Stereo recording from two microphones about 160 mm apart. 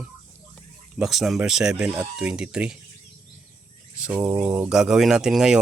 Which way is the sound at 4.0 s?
10° right (ahead or behind).